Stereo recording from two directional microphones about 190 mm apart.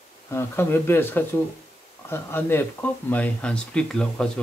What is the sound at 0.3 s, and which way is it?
Speech, 10° left (ahead or behind).